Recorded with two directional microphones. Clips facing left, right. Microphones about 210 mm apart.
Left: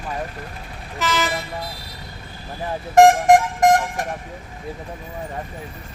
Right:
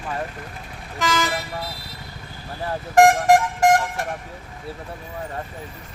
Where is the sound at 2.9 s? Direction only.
20° left (ahead or behind).